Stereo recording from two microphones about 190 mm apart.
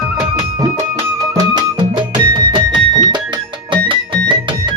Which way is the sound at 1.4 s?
25° right (ahead or behind).